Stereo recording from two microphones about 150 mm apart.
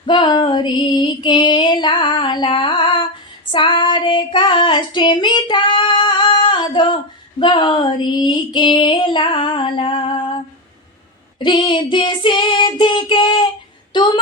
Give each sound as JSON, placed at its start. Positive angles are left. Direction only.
{"t": 0.0, "sound": "female singing", "side_deg": 30}
{"t": 3.5, "sound": "child singing", "side_deg": 30}
{"t": 7.3, "sound": "female singing", "side_deg": 30}
{"t": 11.4, "sound": "child singing", "side_deg": 30}